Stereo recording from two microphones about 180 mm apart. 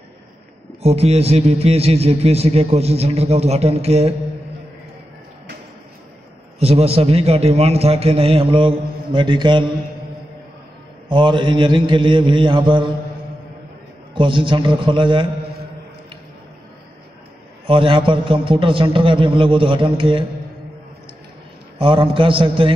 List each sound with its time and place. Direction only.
0.8 s a man's voice: 35° right (ahead or behind)
6.6 s a man's voice: 35° right (ahead or behind)
11.1 s a man's voice: 25° right (ahead or behind)
14.1 s a man's voice: 30° right (ahead or behind)
17.6 s a man's voice: 30° right (ahead or behind)
21.7 s a man's voice: 30° right (ahead or behind)